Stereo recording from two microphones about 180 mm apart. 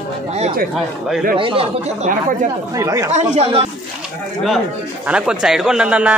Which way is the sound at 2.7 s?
15° right (ahead or behind).